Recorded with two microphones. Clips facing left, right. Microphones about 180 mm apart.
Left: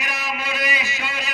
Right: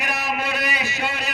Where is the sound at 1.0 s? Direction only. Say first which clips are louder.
Right 3 dB; 60° right (ahead or behind).